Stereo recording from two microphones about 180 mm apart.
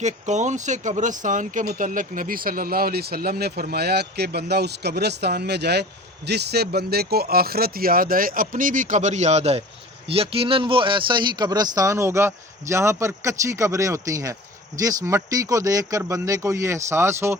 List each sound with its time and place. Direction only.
0.0 s speech: 40° right (ahead or behind); by 17.3 s 15° right (ahead or behind)